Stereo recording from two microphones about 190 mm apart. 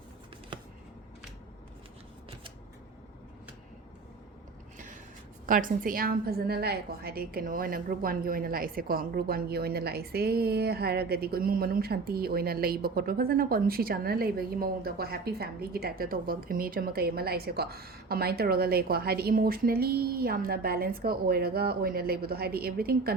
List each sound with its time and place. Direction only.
5.5 s a woman's voice: 45° right (ahead or behind)